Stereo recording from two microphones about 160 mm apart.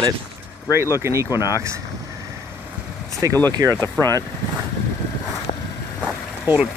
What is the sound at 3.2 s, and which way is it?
Speech, 20° right (ahead or behind).